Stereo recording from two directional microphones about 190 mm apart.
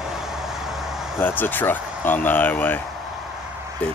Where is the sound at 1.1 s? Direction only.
10° left (ahead or behind).